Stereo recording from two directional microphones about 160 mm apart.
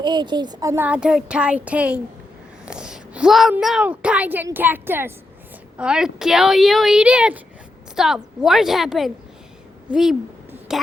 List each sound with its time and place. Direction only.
0.0 s speech: 30° right (ahead or behind)
0.9 s speech: 5° right (ahead or behind)
2.6 s a sound: 5° right (ahead or behind)
3.6 s a woman's voice: 5° right (ahead or behind)